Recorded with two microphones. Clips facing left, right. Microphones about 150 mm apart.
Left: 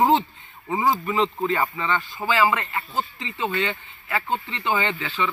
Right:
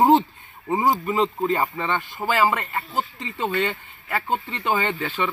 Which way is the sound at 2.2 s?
Centre (ahead or behind).